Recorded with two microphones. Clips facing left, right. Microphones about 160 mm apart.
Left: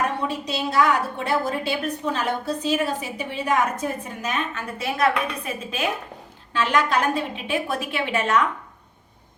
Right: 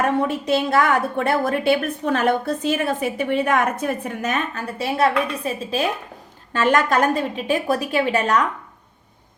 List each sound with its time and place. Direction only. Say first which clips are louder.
0.3 s a woman's voice: right 7 dB; 55° right (ahead or behind)
4.5 s a woman's voice: right 4 dB; 35° right (ahead or behind)
6.5 s a woman's voice: right 3 dB; 45° right (ahead or behind)